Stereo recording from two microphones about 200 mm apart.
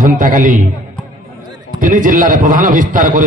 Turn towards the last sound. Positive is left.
turn(degrees=-40)  # may be behind; listen again after turning